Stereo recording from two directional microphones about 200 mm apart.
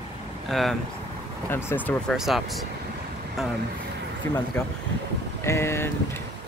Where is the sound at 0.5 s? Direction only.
Centre (ahead or behind).